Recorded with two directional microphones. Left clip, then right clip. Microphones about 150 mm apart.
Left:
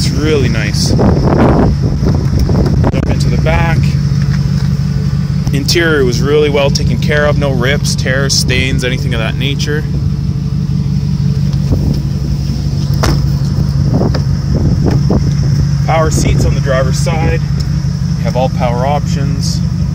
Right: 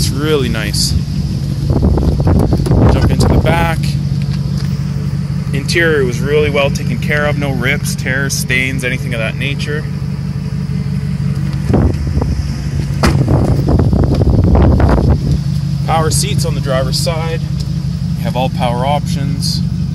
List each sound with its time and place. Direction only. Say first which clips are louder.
0.3 s speech: left 1 dB; 10° right (ahead or behind)
3.2 s a sound: right 2 dB; 15° right (ahead or behind)
5.7 s speech: left 1 dB; 15° left (ahead or behind)
18.4 s speech: left 2 dB; 20° right (ahead or behind)